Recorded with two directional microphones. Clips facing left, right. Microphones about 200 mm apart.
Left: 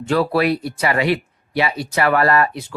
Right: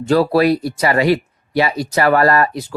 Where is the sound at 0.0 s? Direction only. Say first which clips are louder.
Right 4 dB; 40° right (ahead or behind).